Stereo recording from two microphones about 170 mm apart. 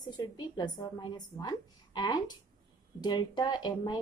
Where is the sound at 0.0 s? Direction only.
25° left (ahead or behind).